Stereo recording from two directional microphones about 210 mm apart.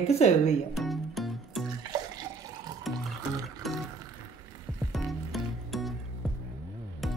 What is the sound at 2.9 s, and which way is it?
Music, centre (ahead or behind).